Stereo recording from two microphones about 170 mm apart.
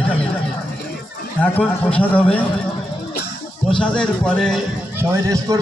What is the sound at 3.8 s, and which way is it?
Speech, 5° left (ahead or behind).